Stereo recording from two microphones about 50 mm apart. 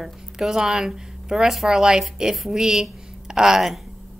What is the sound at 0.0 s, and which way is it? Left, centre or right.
A woman's voice, centre.